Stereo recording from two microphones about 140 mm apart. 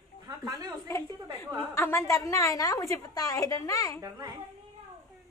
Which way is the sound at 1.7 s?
20° left (ahead or behind).